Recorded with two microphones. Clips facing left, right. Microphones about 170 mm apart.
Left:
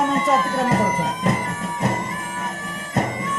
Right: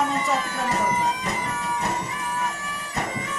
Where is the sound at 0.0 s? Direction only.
50° left (ahead or behind).